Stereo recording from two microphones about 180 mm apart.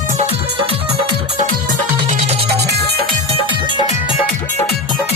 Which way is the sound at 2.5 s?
65° right (ahead or behind).